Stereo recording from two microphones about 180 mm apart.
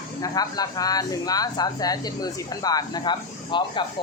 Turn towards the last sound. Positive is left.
turn(degrees=25)  # may be behind; listen again after turning